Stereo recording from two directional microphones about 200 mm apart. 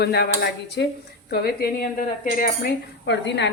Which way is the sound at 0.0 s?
55° left (ahead or behind).